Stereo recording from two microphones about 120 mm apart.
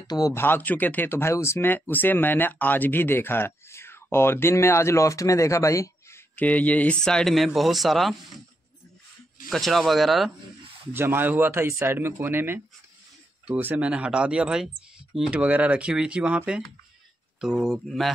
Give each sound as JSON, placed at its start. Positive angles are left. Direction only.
{"t": 0.0, "sound": "speech", "side_deg": 35}
{"t": 0.3, "sound": "speech", "side_deg": 20}
{"t": 9.5, "sound": "speech", "side_deg": 0}
{"t": 10.9, "sound": "speech", "side_deg": -20}